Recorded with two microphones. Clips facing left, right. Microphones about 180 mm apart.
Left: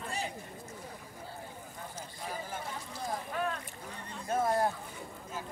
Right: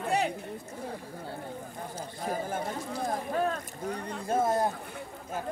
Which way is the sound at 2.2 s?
50° right (ahead or behind).